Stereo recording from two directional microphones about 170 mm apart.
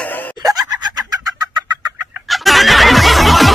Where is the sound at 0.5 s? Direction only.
25° right (ahead or behind).